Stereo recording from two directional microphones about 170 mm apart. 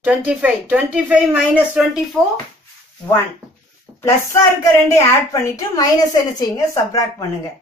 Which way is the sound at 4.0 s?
15° left (ahead or behind).